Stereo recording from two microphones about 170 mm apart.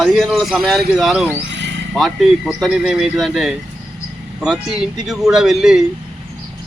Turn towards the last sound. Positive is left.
turn(degrees=-5)  # may be behind; listen again after turning